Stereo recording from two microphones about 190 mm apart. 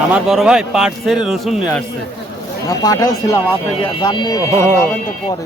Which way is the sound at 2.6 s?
20° left (ahead or behind).